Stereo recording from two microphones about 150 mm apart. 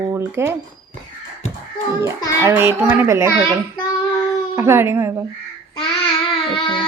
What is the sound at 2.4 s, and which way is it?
Speech, 15° right (ahead or behind).